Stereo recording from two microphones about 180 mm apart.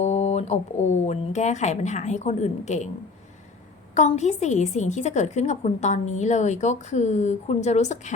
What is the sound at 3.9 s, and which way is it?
A woman's voice, 40° left (ahead or behind).